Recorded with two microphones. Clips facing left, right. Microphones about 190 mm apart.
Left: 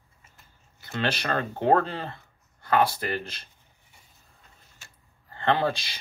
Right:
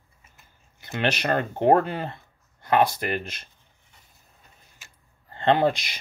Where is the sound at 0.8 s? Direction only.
20° right (ahead or behind).